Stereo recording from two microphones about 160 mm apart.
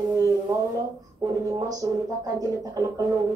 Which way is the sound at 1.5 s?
20° right (ahead or behind).